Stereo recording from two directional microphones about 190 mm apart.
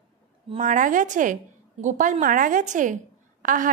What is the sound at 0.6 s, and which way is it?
A woman's voice, 45° right (ahead or behind).